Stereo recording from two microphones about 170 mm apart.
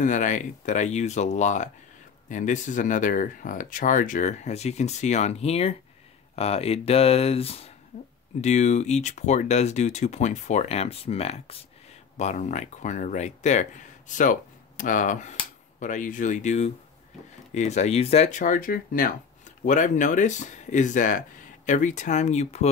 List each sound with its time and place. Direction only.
0.0 s speech: 45° left (ahead or behind)